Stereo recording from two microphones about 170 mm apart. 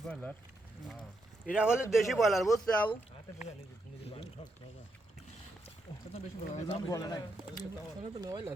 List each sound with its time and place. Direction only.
0.0 s speech: 5° left (ahead or behind)
1.5 s speech: 5° right (ahead or behind)
6.1 s speech: 40° left (ahead or behind)
6.7 s speech: 20° left (ahead or behind)
8.0 s speech: 25° right (ahead or behind)